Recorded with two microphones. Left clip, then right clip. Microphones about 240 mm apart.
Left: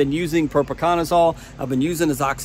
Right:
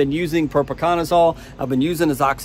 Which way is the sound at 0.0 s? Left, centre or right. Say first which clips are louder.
Right 1 dB; centre.